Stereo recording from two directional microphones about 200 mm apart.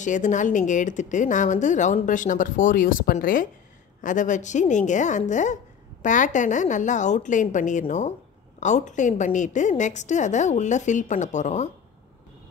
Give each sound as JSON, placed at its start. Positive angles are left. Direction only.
{"t": 0.0, "sound": "speech", "side_deg": 40}